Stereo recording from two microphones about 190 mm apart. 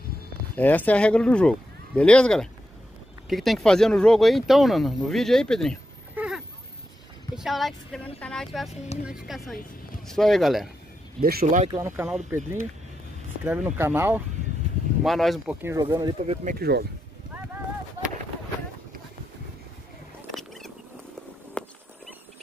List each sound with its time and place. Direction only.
0.6 s speech: 10° left (ahead or behind)
6.1 s a sound: 5° right (ahead or behind)
7.3 s speech: centre (ahead or behind)
11.1 s speech: 50° right (ahead or behind)
11.7 s speech: 10° right (ahead or behind)
13.4 s speech: 5° right (ahead or behind)
15.0 s speech: centre (ahead or behind)
15.6 s speech: 20° right (ahead or behind)
16.4 s speech: 55° right (ahead or behind)
20.2 s a sound: centre (ahead or behind)